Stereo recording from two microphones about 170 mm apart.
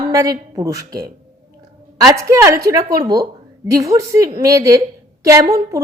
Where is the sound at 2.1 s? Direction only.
15° right (ahead or behind).